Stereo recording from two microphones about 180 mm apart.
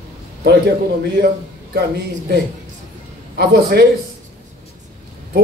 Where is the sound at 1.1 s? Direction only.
60° right (ahead or behind).